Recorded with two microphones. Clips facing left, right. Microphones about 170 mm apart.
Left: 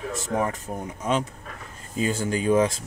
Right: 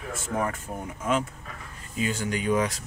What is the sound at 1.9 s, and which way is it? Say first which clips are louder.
Speech: left 3 dB; 35° left (ahead or behind).